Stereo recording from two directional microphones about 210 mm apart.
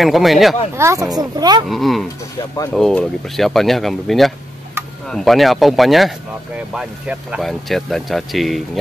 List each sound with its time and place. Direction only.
0.0 s speech: centre (ahead or behind)
0.7 s speech: 15° right (ahead or behind)
1.7 s speech: centre (ahead or behind)